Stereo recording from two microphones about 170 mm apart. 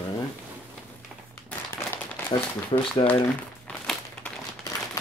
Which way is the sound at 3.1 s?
10° left (ahead or behind).